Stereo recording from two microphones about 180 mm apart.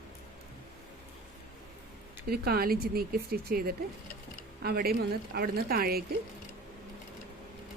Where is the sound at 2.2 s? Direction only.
60° right (ahead or behind).